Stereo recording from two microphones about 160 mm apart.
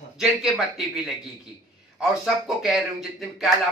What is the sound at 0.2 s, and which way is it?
Speech, centre (ahead or behind).